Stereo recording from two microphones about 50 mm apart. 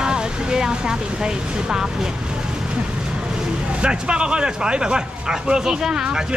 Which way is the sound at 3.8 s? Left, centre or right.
Right.